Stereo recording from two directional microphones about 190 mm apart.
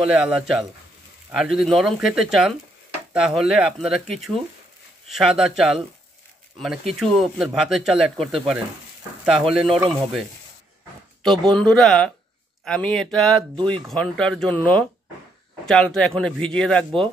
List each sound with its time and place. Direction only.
0.2 s speech: 5° right (ahead or behind)
6.9 s speech: centre (ahead or behind)
11.2 s speech: 5° left (ahead or behind)
13.4 s speech: 25° right (ahead or behind)
13.7 s speech: 5° left (ahead or behind)